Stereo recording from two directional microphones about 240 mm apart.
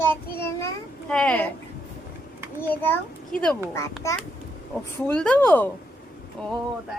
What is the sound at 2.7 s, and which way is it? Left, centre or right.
Speech, centre.